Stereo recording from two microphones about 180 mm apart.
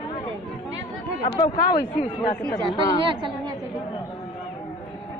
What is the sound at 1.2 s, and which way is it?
Speech, 25° left (ahead or behind).